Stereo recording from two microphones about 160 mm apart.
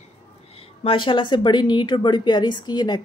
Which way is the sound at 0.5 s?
35° left (ahead or behind).